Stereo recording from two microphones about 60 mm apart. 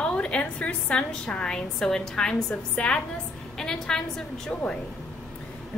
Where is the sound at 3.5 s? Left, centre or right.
Centre.